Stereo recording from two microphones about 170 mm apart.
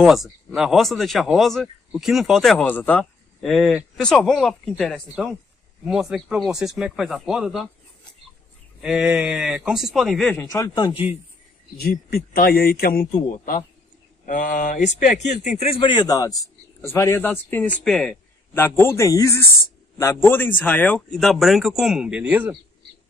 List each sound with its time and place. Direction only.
0.0 s speech: centre (ahead or behind)
8.8 s speech: 5° right (ahead or behind)
10.4 s speech: 15° left (ahead or behind)
12.1 s a man's voice: 65° left (ahead or behind); by 22.6 s 10° right (ahead or behind)